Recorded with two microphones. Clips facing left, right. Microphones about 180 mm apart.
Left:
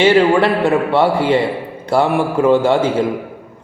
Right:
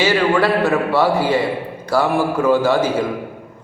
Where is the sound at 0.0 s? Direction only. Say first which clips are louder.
Left 4 dB; 25° left (ahead or behind).